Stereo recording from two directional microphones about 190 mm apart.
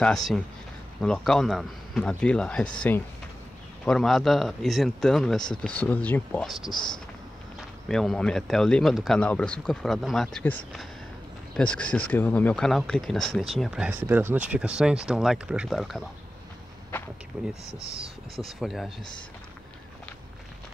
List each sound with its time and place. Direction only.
1.0 s speech: 5° left (ahead or behind)
6.7 s speech: 25° left (ahead or behind)
7.9 s speech: centre (ahead or behind)
17.3 s speech: 5° right (ahead or behind)
17.8 s speech: 30° right (ahead or behind)
18.4 s speech: centre (ahead or behind)